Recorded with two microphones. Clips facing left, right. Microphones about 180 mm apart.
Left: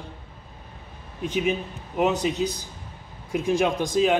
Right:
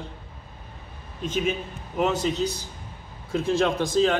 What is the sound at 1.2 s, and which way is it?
A man's voice, 15° left (ahead or behind).